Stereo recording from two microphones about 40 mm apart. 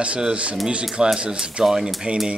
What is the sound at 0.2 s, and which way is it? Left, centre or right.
Speech, right.